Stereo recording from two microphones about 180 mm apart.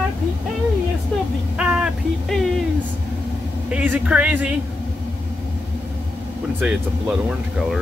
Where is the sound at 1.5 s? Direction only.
5° right (ahead or behind).